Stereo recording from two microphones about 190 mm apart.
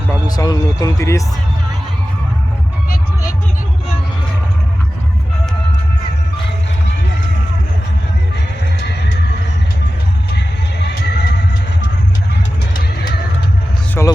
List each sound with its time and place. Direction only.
0.3 s speech: 20° left (ahead or behind)
8.8 s music: 60° left (ahead or behind)
10.8 s music: 60° left (ahead or behind)
12.7 s pigeon: 55° left (ahead or behind)
14.0 s a sound: 10° left (ahead or behind)